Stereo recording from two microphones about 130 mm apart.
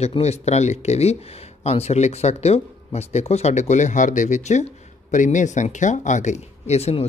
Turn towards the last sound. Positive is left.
turn(degrees=55)  # may be behind; listen again after turning